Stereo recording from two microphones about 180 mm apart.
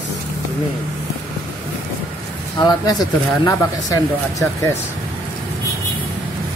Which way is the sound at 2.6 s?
20° left (ahead or behind).